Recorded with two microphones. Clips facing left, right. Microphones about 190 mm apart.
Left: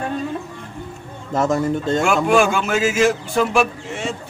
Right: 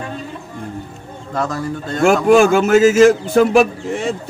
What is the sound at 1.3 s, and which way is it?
Speech, 25° left (ahead or behind).